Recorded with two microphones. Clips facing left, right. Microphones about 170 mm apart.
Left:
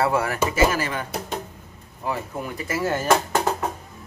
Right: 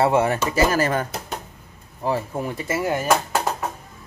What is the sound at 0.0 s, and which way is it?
Speech, 25° right (ahead or behind).